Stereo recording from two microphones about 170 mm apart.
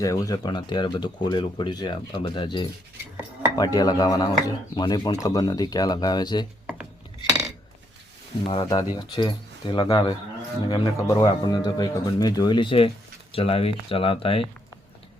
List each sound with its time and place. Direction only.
0.0 s speech: 20° left (ahead or behind)
8.4 s speech: 30° left (ahead or behind)